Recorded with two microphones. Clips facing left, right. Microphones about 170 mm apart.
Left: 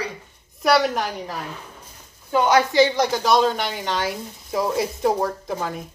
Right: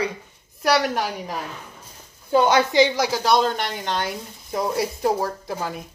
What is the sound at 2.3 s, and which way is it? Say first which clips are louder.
Speech: even; 30° right (ahead or behind).